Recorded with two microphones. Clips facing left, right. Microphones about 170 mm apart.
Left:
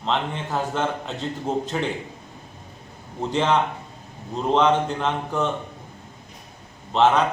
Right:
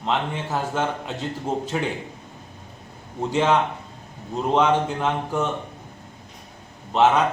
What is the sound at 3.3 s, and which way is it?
A man's voice, 5° right (ahead or behind).